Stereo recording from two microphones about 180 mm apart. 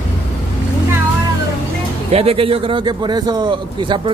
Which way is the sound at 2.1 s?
35° right (ahead or behind).